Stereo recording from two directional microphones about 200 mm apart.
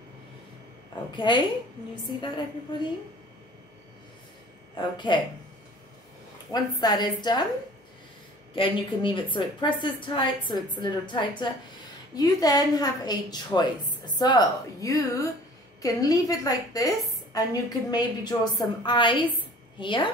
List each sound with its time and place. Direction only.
1.1 s a woman's voice: 25° left (ahead or behind)
2.7 s a woman's voice: 25° left (ahead or behind)
4.7 s a woman's voice: 25° left (ahead or behind)
6.5 s a woman's voice: 20° left (ahead or behind)
8.5 s a woman's voice: 25° left (ahead or behind)
19.3 s a sound: 25° left (ahead or behind)